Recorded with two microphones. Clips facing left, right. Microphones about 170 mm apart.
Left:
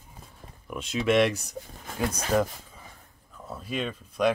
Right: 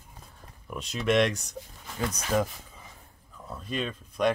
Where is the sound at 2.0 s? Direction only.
50° left (ahead or behind).